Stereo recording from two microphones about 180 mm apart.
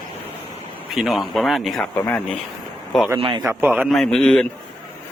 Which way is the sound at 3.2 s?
30° right (ahead or behind).